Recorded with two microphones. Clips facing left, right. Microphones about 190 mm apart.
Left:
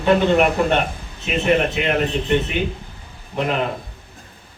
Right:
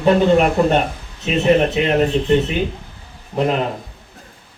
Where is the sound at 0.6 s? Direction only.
35° right (ahead or behind).